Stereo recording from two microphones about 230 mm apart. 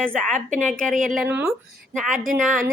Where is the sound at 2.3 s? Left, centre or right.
Right.